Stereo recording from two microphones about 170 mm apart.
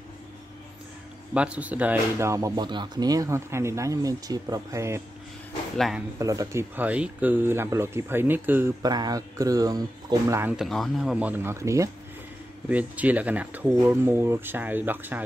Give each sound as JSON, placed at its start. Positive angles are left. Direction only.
{"t": 1.3, "sound": "speech", "side_deg": -5}
{"t": 5.8, "sound": "speech", "side_deg": 0}
{"t": 6.1, "sound": "speech", "side_deg": -20}
{"t": 8.8, "sound": "speech", "side_deg": -20}
{"t": 10.5, "sound": "speech", "side_deg": 0}